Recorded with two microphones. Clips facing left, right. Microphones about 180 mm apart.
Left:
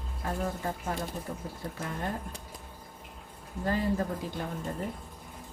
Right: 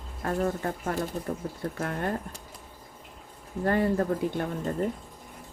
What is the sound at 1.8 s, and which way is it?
Speech, 65° right (ahead or behind).